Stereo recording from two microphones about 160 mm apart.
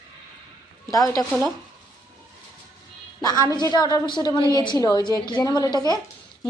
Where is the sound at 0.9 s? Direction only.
20° left (ahead or behind).